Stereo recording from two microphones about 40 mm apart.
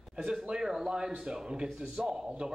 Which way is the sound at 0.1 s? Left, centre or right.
Right.